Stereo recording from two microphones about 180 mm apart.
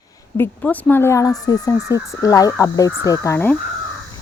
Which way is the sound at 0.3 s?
10° left (ahead or behind).